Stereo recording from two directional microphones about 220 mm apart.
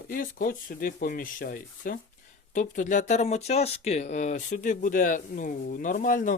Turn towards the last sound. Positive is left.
turn(degrees=35)  # may be behind; listen again after turning